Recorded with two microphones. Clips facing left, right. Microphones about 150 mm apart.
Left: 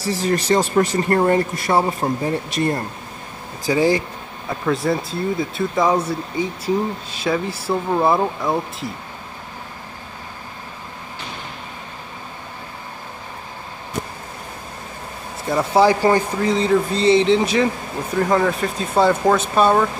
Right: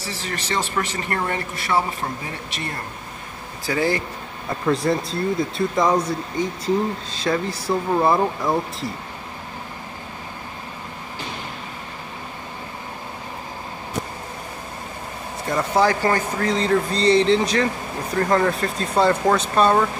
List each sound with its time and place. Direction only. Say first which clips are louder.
0.0 s speech: left 10 dB; 40° left (ahead or behind)
3.6 s speech: left 5 dB; 15° left (ahead or behind)
4.5 s speech: even; centre (ahead or behind)
15.4 s speech: left 4 dB; 10° left (ahead or behind)